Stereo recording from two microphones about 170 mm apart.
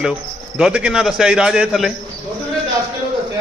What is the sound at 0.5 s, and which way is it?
A man's voice, 10° right (ahead or behind).